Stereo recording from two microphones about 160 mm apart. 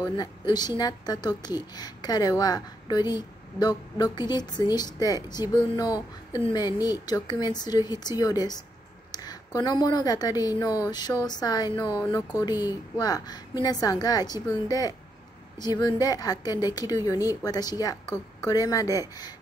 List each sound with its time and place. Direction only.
0.0 s speech: 25° left (ahead or behind)